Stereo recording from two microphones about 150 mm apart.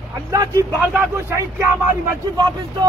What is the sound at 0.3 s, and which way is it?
Speech, 20° right (ahead or behind).